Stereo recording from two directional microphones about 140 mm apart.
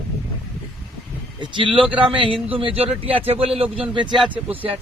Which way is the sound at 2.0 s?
35° right (ahead or behind).